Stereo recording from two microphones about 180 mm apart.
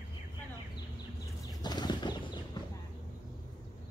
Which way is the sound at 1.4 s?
25° left (ahead or behind).